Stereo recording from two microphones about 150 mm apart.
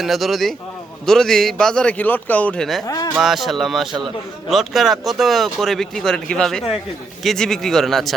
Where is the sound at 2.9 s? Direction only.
25° left (ahead or behind).